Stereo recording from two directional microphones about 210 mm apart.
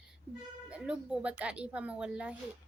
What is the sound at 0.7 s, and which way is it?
A woman's voice, 5° right (ahead or behind).